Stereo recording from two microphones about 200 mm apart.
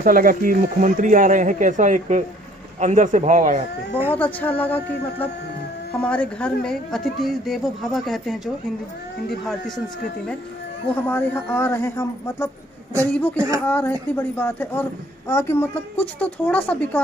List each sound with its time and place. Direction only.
0.0 s speech: 45° right (ahead or behind)
4.1 s a woman's voice: 10° left (ahead or behind)
11.0 s a woman's voice: 10° left (ahead or behind)